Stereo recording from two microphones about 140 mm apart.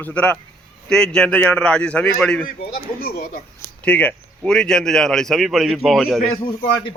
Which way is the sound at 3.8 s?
10° left (ahead or behind).